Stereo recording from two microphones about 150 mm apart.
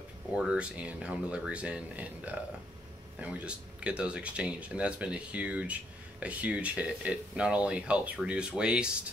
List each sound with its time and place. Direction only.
0.3 s speech: 5° right (ahead or behind)